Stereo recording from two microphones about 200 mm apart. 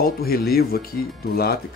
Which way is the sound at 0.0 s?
50° left (ahead or behind).